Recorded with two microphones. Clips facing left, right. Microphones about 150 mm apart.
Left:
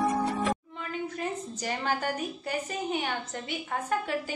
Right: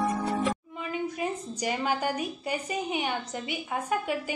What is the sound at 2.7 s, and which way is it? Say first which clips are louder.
A woman's voice: right 2 dB; 10° right (ahead or behind).